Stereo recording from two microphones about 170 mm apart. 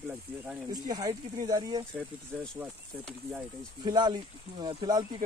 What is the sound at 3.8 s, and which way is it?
Speech, 25° right (ahead or behind).